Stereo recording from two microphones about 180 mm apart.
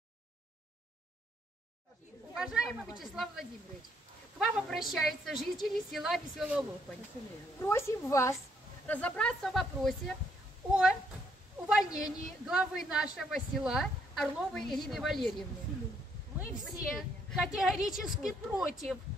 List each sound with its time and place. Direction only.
2.3 s a woman's voice: centre (ahead or behind)
7.5 s a woman's voice: 15° left (ahead or behind)
11.6 s a woman's voice: 5° right (ahead or behind)